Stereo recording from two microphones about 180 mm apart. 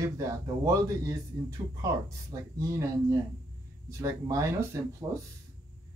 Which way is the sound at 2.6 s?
20° right (ahead or behind).